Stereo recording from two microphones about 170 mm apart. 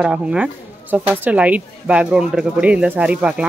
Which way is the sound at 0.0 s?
5° right (ahead or behind).